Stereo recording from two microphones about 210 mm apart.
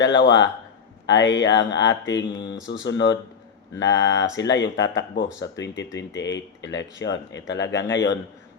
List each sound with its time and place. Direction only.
0.0 s speech: 60° left (ahead or behind)